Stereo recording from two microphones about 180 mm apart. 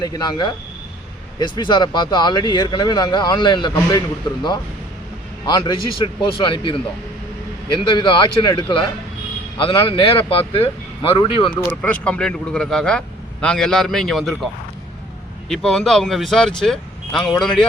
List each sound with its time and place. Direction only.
0.0 s speech: 25° left (ahead or behind)
5.5 s speech: 25° left (ahead or behind)
11.8 s speech: 5° left (ahead or behind)